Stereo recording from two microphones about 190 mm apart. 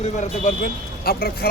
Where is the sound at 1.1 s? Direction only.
50° left (ahead or behind).